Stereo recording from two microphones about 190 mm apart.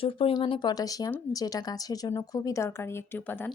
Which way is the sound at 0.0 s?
30° left (ahead or behind).